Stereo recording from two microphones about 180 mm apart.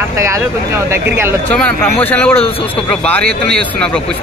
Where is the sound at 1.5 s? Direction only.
10° left (ahead or behind).